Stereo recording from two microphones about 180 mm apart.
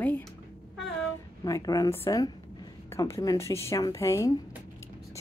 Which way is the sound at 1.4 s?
20° left (ahead or behind).